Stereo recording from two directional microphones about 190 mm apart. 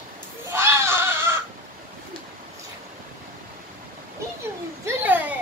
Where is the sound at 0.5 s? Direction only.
15° right (ahead or behind).